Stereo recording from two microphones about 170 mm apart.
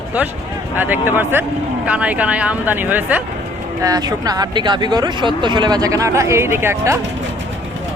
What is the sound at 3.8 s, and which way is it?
Speech, 20° right (ahead or behind).